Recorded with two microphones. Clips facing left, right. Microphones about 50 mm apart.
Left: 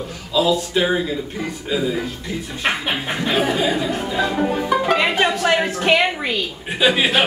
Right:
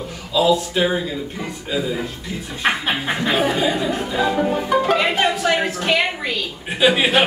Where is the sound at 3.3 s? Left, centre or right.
Centre.